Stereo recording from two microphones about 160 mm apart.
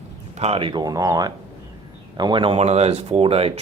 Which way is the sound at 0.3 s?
40° right (ahead or behind).